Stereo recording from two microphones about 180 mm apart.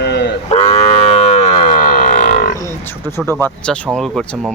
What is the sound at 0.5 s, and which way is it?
Cattle, 35° left (ahead or behind).